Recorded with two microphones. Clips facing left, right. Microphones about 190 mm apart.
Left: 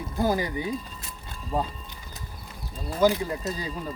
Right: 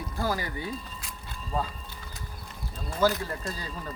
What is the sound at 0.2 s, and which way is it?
Speech, 20° left (ahead or behind).